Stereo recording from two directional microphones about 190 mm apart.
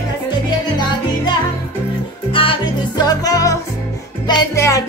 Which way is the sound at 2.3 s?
25° left (ahead or behind).